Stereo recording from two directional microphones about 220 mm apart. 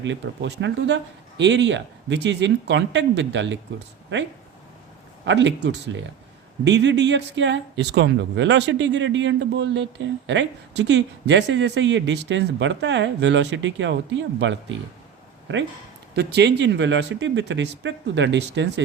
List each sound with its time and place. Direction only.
0.0 s speech: 55° right (ahead or behind)
5.2 s speech: 55° right (ahead or behind)
16.1 s speech: 50° right (ahead or behind)